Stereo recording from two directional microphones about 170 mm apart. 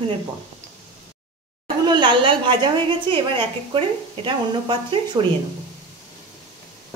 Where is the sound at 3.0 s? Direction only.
30° right (ahead or behind).